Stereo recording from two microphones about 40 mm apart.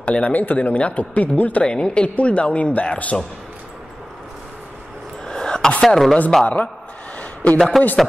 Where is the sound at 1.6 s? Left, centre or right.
Left.